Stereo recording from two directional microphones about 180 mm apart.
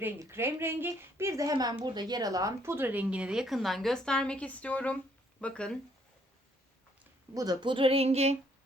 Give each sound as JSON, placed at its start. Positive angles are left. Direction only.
{"t": 0.0, "sound": "a woman's voice", "side_deg": -15}
{"t": 7.3, "sound": "speech", "side_deg": -20}